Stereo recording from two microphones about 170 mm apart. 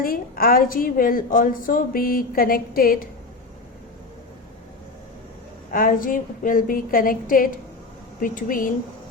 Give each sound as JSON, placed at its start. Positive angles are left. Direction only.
{"t": 0.0, "sound": "a woman's voice", "side_deg": 60}
{"t": 5.7, "sound": "a woman's voice", "side_deg": 55}